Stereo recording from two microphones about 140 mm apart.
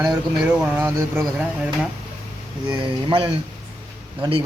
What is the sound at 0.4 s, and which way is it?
Speech, 10° right (ahead or behind).